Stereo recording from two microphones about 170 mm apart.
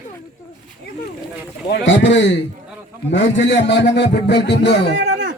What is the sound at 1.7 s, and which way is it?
A man's voice, 90° left.